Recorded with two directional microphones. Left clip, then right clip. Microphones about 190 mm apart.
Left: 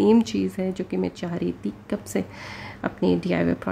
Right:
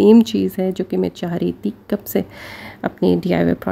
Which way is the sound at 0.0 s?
35° right (ahead or behind).